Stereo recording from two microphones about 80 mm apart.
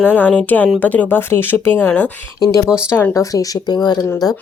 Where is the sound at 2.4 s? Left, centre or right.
Left.